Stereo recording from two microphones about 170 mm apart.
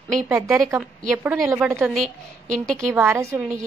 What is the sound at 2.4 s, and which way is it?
Speech, 50° right (ahead or behind).